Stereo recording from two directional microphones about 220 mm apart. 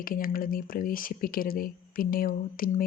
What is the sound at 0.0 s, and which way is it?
Speech, 40° left (ahead or behind).